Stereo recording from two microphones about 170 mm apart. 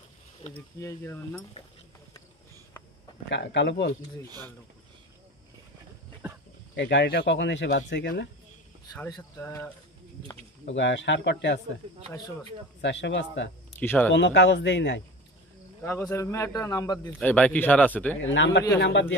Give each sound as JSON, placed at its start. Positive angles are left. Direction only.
{"t": 0.7, "sound": "a man's voice", "side_deg": 15}
{"t": 3.3, "sound": "speech", "side_deg": 90}
{"t": 6.2, "sound": "a sound", "side_deg": -10}
{"t": 6.7, "sound": "speech", "side_deg": 90}
{"t": 8.9, "sound": "a man's voice", "side_deg": 15}
{"t": 10.6, "sound": "speech", "side_deg": 90}
{"t": 12.8, "sound": "speech", "side_deg": 90}
{"t": 13.7, "sound": "a man's voice", "side_deg": 10}
{"t": 14.1, "sound": "speech", "side_deg": 90}
{"t": 15.8, "sound": "a man's voice", "side_deg": 15}
{"t": 17.2, "sound": "a man's voice", "side_deg": 10}
{"t": 18.3, "sound": "speech", "side_deg": 90}